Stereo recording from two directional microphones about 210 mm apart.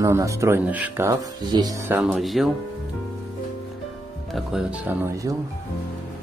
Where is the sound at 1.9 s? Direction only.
10° right (ahead or behind).